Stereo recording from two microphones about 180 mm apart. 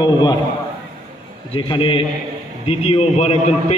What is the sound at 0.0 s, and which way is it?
Speech, 20° left (ahead or behind).